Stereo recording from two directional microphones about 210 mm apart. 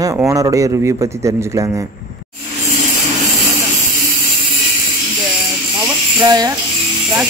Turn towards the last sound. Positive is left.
turn(degrees=-20)  # may be behind; listen again after turning